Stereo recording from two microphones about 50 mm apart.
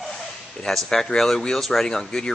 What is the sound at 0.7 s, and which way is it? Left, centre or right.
Speech, centre.